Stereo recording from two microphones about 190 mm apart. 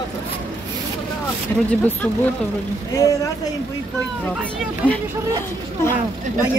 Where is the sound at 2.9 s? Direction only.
15° left (ahead or behind).